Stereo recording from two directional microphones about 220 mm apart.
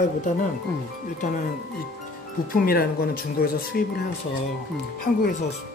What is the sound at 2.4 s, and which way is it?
Speech, 40° left (ahead or behind).